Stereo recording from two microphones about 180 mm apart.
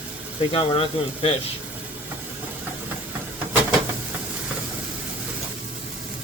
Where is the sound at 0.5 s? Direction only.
30° left (ahead or behind).